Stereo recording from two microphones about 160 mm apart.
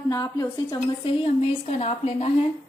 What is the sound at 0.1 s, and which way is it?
Speech, 20° left (ahead or behind).